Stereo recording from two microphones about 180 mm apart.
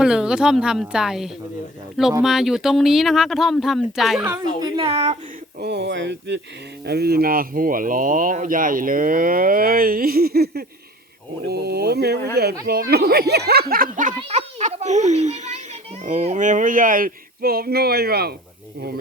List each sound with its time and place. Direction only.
0.0 s speech: 5° right (ahead or behind)
4.3 s speech: 25° right (ahead or behind)
5.5 s speech: 70° right (ahead or behind)
6.8 s a child's voice: 65° right (ahead or behind)